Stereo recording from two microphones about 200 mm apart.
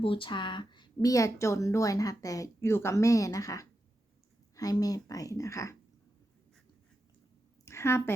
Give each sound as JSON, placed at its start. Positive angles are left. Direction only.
{"t": 0.0, "sound": "a woman's voice", "side_deg": 25}
{"t": 7.6, "sound": "a woman's voice", "side_deg": 15}